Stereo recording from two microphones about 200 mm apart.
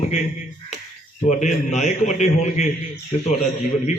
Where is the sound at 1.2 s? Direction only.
35° left (ahead or behind).